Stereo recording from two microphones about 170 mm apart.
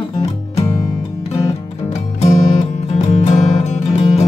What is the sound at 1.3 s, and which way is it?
Music, 40° left (ahead or behind).